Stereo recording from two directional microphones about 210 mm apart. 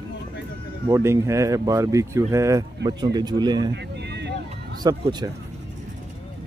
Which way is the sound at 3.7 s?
55° right (ahead or behind).